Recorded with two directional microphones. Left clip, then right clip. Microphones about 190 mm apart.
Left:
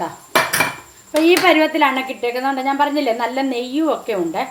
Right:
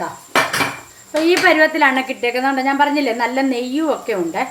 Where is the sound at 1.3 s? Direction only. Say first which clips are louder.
Right 1 dB; 10° left (ahead or behind).